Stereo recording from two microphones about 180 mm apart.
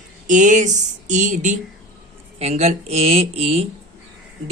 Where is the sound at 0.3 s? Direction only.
45° right (ahead or behind).